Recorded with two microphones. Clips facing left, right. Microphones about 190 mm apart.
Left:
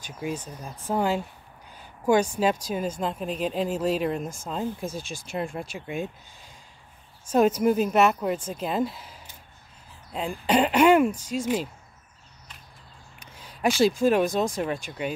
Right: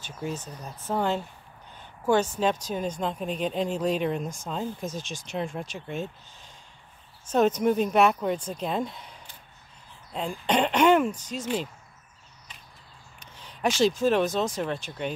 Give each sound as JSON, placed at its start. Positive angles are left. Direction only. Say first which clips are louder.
{"t": 0.0, "sound": "speech", "louder": "left 2 dB", "side_deg": 10}
{"t": 13.2, "sound": "speech", "louder": "left 2 dB", "side_deg": 10}